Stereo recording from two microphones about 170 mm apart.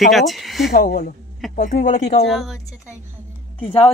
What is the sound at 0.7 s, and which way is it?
Speech, 60° left (ahead or behind).